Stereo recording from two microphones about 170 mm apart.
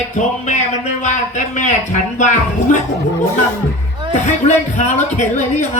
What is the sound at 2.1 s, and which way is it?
Speech, 45° left (ahead or behind).